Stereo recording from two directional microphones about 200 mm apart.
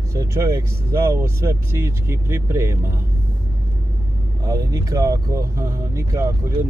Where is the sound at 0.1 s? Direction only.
15° right (ahead or behind).